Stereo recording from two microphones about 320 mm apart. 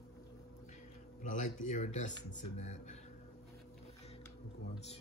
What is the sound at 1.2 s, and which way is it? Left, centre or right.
Speech, left.